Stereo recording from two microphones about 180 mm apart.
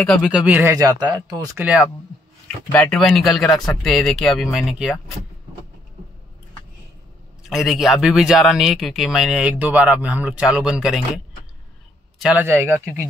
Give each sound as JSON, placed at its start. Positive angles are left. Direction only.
{"t": 0.0, "sound": "speech", "side_deg": 5}
{"t": 0.3, "sound": "speech", "side_deg": -5}
{"t": 1.6, "sound": "speech", "side_deg": -5}
{"t": 2.4, "sound": "speech", "side_deg": 5}
{"t": 7.4, "sound": "speech", "side_deg": 0}
{"t": 12.2, "sound": "speech", "side_deg": -10}